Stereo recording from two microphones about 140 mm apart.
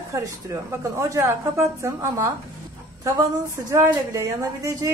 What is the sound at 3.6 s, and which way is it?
A woman's voice, 20° right (ahead or behind).